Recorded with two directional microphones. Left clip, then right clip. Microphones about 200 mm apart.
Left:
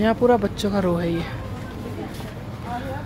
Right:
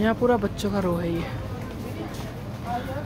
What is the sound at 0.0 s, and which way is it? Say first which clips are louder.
Speech: left 4 dB; 15° left (ahead or behind).